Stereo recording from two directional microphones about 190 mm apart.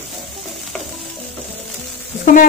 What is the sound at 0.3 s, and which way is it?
Stir, centre (ahead or behind).